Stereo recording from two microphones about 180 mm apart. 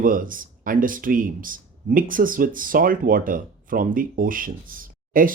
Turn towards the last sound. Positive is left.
turn(degrees=-50)  # may be behind; listen again after turning